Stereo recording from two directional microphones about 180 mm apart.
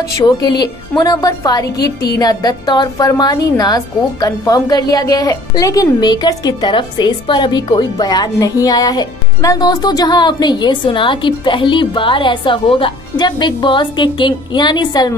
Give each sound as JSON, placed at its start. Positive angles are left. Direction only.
{"t": 0.2, "sound": "a woman's voice", "side_deg": 25}